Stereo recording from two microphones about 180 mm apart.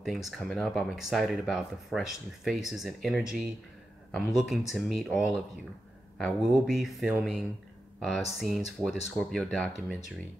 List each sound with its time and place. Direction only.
0.0 s speech: centre (ahead or behind)